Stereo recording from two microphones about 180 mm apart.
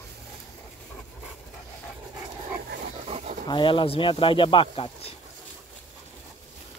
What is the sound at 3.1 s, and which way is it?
Dog, 40° right (ahead or behind).